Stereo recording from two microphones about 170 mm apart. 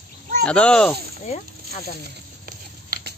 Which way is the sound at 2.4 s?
65° right (ahead or behind).